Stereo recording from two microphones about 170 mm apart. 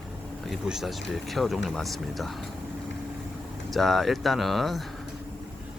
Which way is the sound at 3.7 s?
Centre (ahead or behind).